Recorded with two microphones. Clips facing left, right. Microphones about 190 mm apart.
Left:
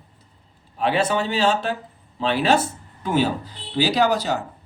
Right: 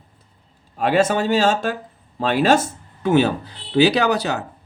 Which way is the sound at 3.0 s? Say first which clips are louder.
Right 4 dB; 65° right (ahead or behind).